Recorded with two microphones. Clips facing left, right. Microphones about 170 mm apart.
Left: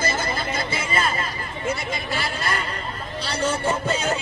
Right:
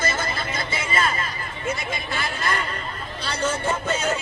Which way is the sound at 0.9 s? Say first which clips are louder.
Right 1 dB; 35° left (ahead or behind).